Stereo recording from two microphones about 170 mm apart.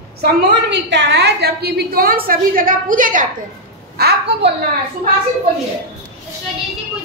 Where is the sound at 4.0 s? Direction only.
65° right (ahead or behind).